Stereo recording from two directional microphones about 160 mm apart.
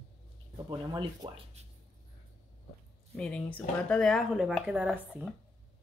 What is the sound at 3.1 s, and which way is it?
Speech, 5° left (ahead or behind).